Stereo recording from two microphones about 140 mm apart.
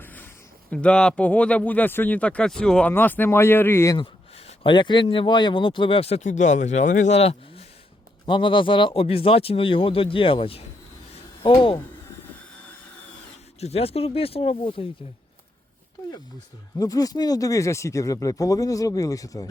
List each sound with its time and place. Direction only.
0.0 s a sound: 15° left (ahead or behind)
0.7 s speech: 10° left (ahead or behind)
3.9 s speech: 45° left (ahead or behind)
13.6 s speech: 45° left (ahead or behind)
16.7 s speech: 25° left (ahead or behind)